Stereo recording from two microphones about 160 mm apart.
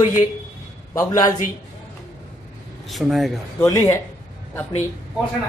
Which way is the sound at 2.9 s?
Centre (ahead or behind).